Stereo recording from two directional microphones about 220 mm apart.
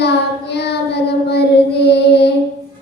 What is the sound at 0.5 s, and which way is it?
Child singing, 50° left (ahead or behind).